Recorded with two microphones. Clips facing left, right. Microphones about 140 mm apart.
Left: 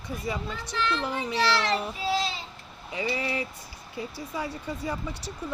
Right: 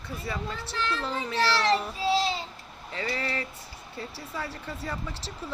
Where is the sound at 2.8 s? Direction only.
15° left (ahead or behind).